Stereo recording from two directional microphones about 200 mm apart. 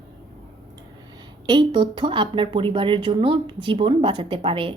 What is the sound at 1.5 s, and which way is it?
Speech, 25° right (ahead or behind).